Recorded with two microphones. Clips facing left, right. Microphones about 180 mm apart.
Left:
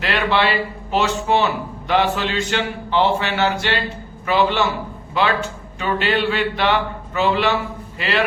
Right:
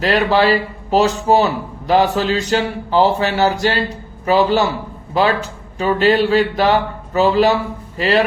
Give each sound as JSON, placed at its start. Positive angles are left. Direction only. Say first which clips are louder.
{"t": 0.0, "sound": "speech", "louder": "right 5 dB", "side_deg": -40}